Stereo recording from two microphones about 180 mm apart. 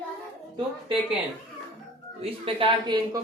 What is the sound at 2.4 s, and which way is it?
Speech, 30° right (ahead or behind).